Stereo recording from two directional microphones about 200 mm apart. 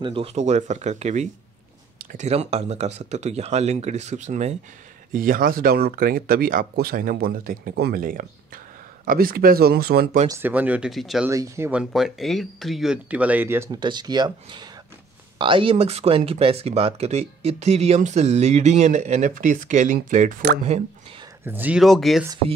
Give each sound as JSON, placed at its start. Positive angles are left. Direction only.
{"t": 0.0, "sound": "speech", "side_deg": -30}
{"t": 10.3, "sound": "speech", "side_deg": -10}
{"t": 11.2, "sound": "speech", "side_deg": -15}
{"t": 13.7, "sound": "speech", "side_deg": -20}
{"t": 21.5, "sound": "speech", "side_deg": -10}